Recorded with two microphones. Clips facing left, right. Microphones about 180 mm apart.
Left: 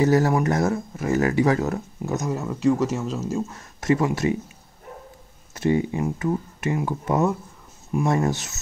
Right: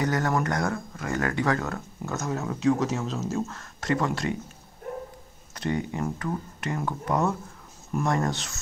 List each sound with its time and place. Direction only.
0.0 s speech: 25° left (ahead or behind)
2.2 s speech: centre (ahead or behind)
3.4 s speech: 20° left (ahead or behind)
5.5 s speech: 20° left (ahead or behind)